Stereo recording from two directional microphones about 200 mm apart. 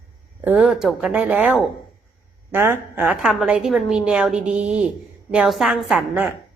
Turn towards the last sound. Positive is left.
turn(degrees=-5)  # may be behind; listen again after turning